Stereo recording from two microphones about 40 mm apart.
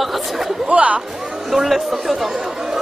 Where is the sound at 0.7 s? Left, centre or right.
Right.